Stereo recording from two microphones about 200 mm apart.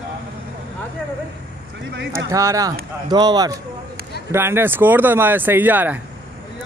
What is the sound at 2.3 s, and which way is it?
A man's voice, 15° right (ahead or behind).